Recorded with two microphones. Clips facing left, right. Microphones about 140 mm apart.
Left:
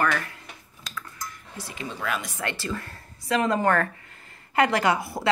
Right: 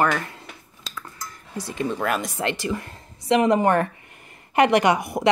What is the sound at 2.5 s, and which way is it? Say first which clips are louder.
A woman's voice: right 3 dB; 20° right (ahead or behind).